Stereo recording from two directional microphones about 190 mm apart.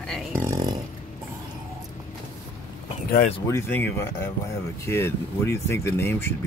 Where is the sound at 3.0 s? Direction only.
50° left (ahead or behind).